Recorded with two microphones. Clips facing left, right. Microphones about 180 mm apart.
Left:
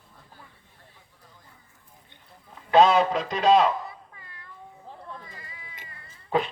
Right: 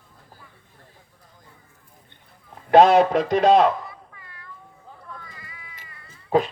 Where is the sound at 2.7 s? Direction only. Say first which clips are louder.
Right 5 dB; 60° right (ahead or behind).